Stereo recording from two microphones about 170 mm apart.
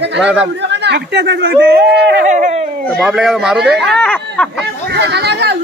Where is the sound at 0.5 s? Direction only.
90° right; by 1.8 s 70° right (ahead or behind).